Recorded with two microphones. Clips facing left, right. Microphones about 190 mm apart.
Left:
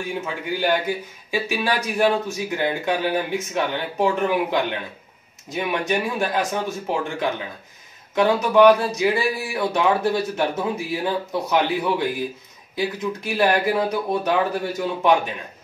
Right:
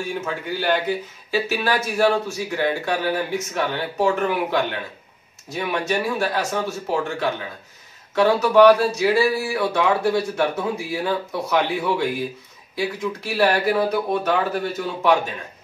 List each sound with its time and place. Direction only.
0.0 s speech: 15° left (ahead or behind)